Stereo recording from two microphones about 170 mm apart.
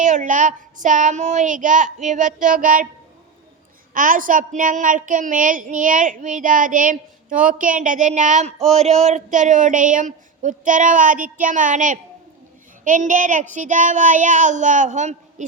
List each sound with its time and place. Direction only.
0.0 s a woman's voice: 50° right (ahead or behind)
3.9 s a woman's voice: 55° right (ahead or behind)